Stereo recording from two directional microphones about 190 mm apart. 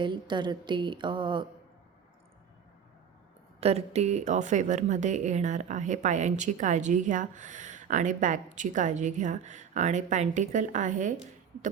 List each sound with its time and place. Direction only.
0.0 s speech: 25° right (ahead or behind)
3.6 s a woman's voice: 35° right (ahead or behind)